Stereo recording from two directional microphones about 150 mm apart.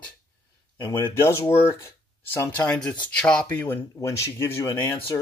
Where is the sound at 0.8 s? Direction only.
15° left (ahead or behind).